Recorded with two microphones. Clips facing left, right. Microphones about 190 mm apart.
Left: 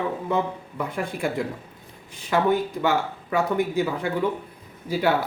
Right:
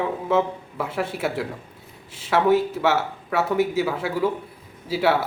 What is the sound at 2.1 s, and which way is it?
Speech, 85° right.